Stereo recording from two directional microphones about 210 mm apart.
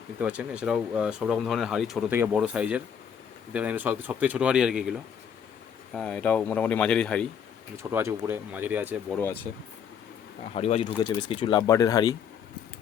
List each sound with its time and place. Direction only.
0.2 s speech: 5° right (ahead or behind)
7.8 s speech: 10° right (ahead or behind)
9.0 s speech: 10° left (ahead or behind)
10.5 s speech: 30° left (ahead or behind)